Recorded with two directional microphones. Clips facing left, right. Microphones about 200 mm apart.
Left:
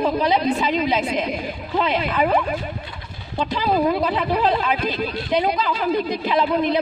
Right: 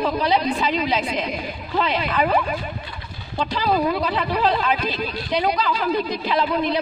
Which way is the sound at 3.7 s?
45° left (ahead or behind).